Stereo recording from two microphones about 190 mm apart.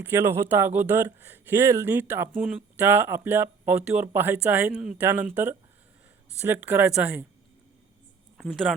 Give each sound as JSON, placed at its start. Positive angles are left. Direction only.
{"t": 0.0, "sound": "speech", "side_deg": -10}
{"t": 8.4, "sound": "speech", "side_deg": 0}